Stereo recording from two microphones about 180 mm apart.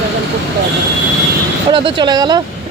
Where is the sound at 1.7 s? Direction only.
30° right (ahead or behind).